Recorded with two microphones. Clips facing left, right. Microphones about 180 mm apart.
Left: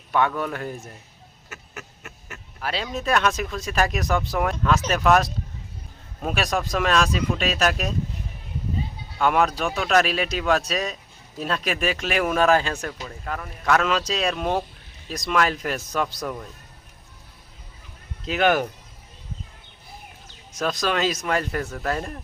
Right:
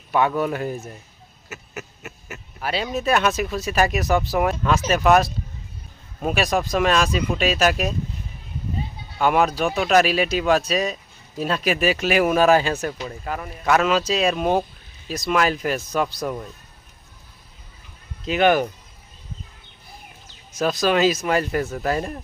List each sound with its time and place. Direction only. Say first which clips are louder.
0.1 s speech: right 3 dB; 10° right (ahead or behind)
9.1 s speech: right 2 dB; 5° right (ahead or behind)
18.3 s speech: right 3 dB; centre (ahead or behind)
20.5 s speech: right 4 dB; centre (ahead or behind)